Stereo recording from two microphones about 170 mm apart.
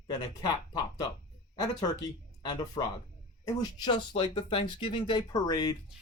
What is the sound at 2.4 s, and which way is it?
Speech, 25° left (ahead or behind).